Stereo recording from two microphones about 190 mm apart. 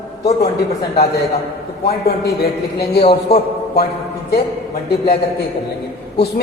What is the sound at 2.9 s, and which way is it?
Speech, 60° left (ahead or behind).